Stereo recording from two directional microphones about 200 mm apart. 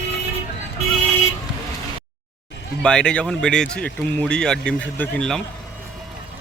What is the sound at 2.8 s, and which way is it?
A man's voice, 5° left (ahead or behind).